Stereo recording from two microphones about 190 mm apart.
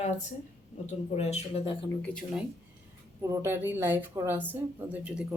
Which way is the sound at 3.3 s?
15° right (ahead or behind).